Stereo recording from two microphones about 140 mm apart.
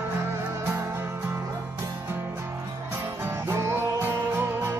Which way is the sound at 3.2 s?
20° right (ahead or behind).